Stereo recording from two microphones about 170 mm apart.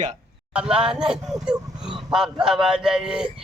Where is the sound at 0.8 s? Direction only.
5° right (ahead or behind).